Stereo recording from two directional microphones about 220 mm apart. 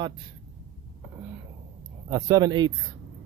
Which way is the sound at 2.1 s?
15° right (ahead or behind).